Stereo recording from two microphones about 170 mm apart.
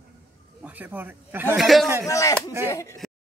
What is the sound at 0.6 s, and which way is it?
Speech, 10° right (ahead or behind).